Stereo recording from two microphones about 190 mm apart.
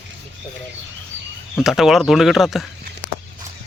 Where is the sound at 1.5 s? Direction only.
Centre (ahead or behind).